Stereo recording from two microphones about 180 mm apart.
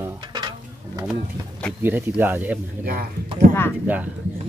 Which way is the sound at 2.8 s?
55° right (ahead or behind).